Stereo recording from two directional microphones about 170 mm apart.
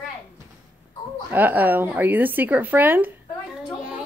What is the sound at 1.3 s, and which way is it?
Speech, 10° right (ahead or behind).